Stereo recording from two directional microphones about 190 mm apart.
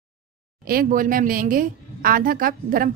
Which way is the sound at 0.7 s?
50° right (ahead or behind).